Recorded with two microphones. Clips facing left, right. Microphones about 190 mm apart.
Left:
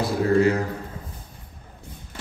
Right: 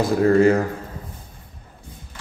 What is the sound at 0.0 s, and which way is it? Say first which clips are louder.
Speech: right 4 dB; 50° right (ahead or behind).